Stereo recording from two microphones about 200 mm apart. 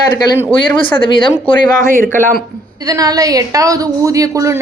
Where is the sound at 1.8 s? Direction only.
40° right (ahead or behind).